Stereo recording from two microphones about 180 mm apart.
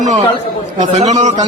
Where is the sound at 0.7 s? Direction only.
45° right (ahead or behind).